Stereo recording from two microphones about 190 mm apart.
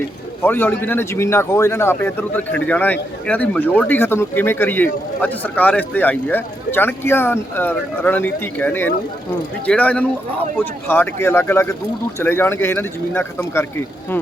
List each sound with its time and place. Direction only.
0.4 s speech: 10° left (ahead or behind)